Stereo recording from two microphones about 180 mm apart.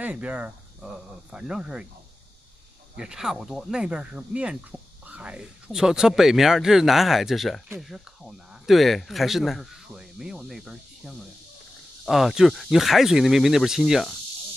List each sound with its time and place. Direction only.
0.0 s speech: 10° right (ahead or behind)
3.0 s speech: 5° right (ahead or behind)